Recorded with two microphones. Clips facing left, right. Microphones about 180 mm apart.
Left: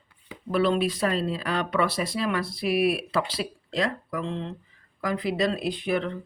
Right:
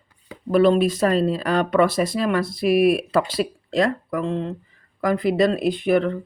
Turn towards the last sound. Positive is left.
turn(degrees=-50)  # may be behind; listen again after turning